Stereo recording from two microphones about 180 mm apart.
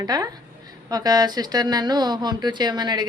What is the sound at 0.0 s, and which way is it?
A woman's voice, 20° right (ahead or behind).